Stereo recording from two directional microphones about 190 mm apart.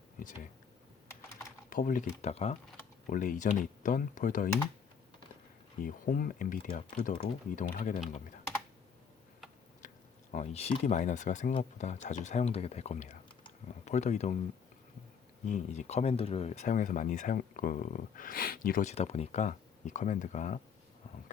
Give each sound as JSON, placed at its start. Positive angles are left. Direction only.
{"t": 1.7, "sound": "speech", "side_deg": 45}
{"t": 5.8, "sound": "speech", "side_deg": 50}
{"t": 10.3, "sound": "speech", "side_deg": 35}
{"t": 15.4, "sound": "speech", "side_deg": 40}